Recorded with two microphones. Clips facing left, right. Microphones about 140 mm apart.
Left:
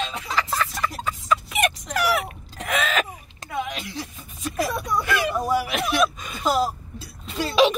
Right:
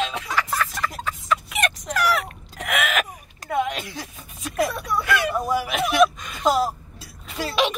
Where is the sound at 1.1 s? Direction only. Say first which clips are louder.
Left 2 dB; 5° left (ahead or behind).